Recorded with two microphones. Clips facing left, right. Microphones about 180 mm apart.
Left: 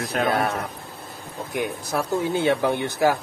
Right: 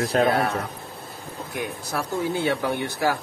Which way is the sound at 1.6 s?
20° left (ahead or behind).